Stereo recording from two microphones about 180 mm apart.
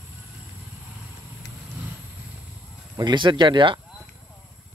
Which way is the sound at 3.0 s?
25° right (ahead or behind).